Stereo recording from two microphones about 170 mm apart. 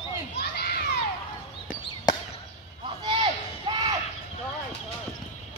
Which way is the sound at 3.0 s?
30° right (ahead or behind).